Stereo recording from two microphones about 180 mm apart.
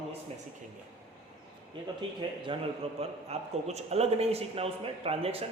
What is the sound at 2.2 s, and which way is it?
Speech, 25° right (ahead or behind).